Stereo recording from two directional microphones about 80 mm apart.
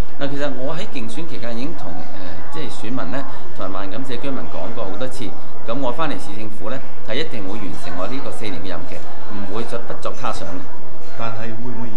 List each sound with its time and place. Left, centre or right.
0.2 s speech: centre
10.0 s speech: centre
11.1 s a man's voice: right